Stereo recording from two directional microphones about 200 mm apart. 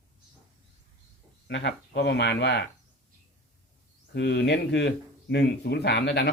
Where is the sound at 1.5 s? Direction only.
60° left (ahead or behind).